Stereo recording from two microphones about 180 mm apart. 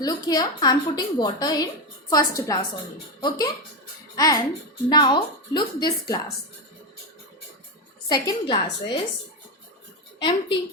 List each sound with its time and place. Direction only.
0.0 s a woman's voice: 20° left (ahead or behind)
4.9 s a woman's voice: 25° left (ahead or behind)
8.0 s a woman's voice: 25° left (ahead or behind)
10.2 s a woman's voice: 25° left (ahead or behind)